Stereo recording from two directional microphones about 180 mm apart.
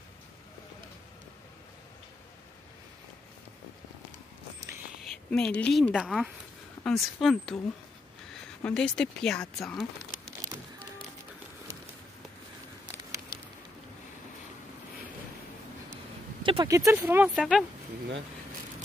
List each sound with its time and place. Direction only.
5.3 s speech: 5° left (ahead or behind)
8.6 s speech: 5° left (ahead or behind)
12.8 s a sound: 20° right (ahead or behind)
16.4 s speech: 20° right (ahead or behind); by 17.6 s 5° right (ahead or behind)